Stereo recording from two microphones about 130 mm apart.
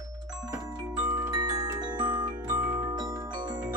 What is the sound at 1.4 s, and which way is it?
Music, 30° right (ahead or behind).